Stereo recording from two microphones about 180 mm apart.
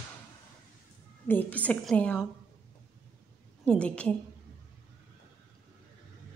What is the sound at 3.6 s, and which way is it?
Speech, 5° left (ahead or behind).